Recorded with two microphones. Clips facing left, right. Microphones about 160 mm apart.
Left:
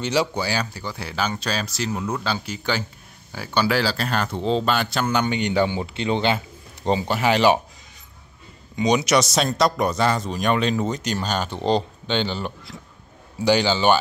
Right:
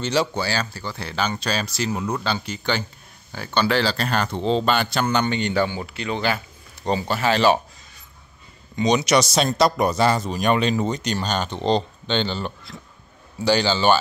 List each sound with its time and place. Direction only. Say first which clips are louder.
0.0 s speech: even; 15° left (ahead or behind)
8.7 s speech: even; 10° left (ahead or behind)